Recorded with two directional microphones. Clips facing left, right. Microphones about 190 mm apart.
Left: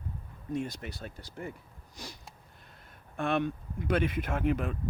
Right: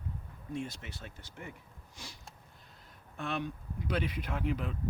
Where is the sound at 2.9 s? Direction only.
55° left (ahead or behind).